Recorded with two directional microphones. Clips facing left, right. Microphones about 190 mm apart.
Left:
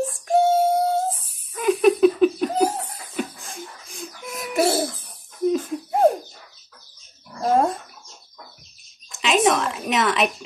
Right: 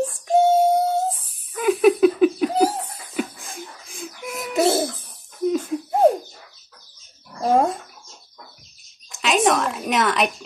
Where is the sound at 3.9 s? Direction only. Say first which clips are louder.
Right 3 dB; 5° right (ahead or behind).